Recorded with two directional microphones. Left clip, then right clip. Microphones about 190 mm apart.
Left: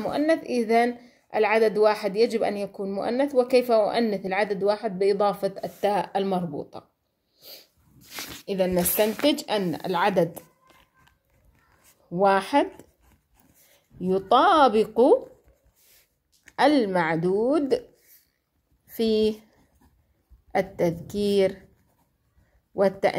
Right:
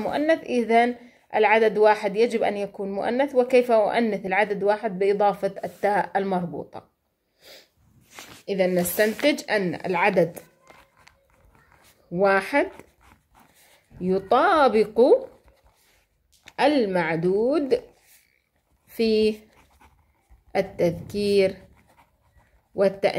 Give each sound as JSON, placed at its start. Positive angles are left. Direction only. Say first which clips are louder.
{"t": 0.0, "sound": "a woman's voice", "louder": "right 1 dB", "side_deg": 15}
{"t": 7.3, "sound": "sneeze", "louder": "left 1 dB", "side_deg": 15}
{"t": 8.1, "sound": "a sound", "louder": "left 6 dB", "side_deg": 50}
{"t": 8.6, "sound": "a woman's voice", "louder": "right 1 dB", "side_deg": 25}
{"t": 12.2, "sound": "a woman's voice", "louder": "even", "side_deg": 15}
{"t": 14.3, "sound": "a woman's voice", "louder": "left 1 dB", "side_deg": 20}
{"t": 16.4, "sound": "a woman's voice", "louder": "even", "side_deg": 15}
{"t": 18.9, "sound": "speech", "louder": "right 2 dB", "side_deg": 15}
{"t": 20.5, "sound": "a woman's voice", "louder": "right 1 dB", "side_deg": 15}
{"t": 22.8, "sound": "a woman's voice", "louder": "right 1 dB", "side_deg": 15}